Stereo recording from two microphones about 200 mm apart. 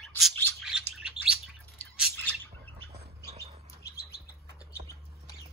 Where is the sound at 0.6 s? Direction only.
5° right (ahead or behind).